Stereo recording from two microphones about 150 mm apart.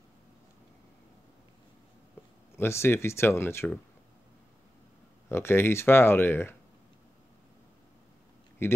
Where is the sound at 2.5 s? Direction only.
15° left (ahead or behind).